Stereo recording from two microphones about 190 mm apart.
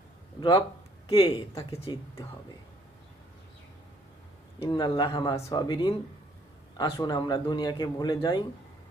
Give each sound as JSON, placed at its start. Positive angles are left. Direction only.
{"t": 0.3, "sound": "speech", "side_deg": 25}
{"t": 4.6, "sound": "speech", "side_deg": 25}